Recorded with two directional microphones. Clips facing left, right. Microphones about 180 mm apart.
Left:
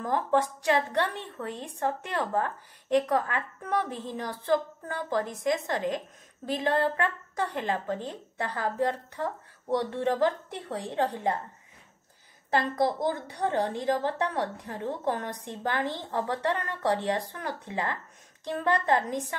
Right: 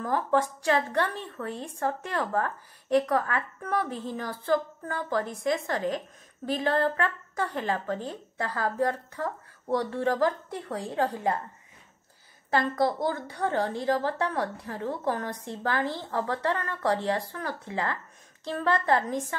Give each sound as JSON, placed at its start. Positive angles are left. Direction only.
{"t": 0.0, "sound": "a woman's voice", "side_deg": 20}
{"t": 12.7, "sound": "a woman's voice", "side_deg": 20}